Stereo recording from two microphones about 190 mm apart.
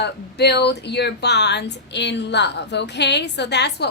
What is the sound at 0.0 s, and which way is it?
Speech, 60° left (ahead or behind).